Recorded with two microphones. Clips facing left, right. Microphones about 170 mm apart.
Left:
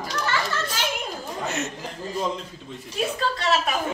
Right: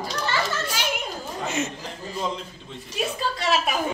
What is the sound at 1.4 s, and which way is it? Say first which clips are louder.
Speech: right 2 dB; centre (ahead or behind).